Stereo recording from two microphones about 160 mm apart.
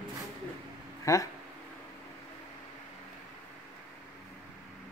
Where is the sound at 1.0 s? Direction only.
20° left (ahead or behind).